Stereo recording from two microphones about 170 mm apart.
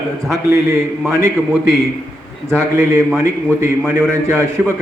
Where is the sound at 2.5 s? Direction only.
15° right (ahead or behind).